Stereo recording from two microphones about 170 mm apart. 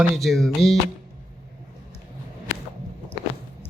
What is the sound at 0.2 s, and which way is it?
Speech, centre (ahead or behind).